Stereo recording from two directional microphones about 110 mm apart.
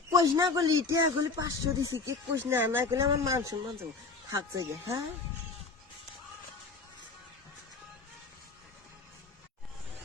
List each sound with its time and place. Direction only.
0.1 s speech: 35° right (ahead or behind)
2.4 s speech: 20° right (ahead or behind)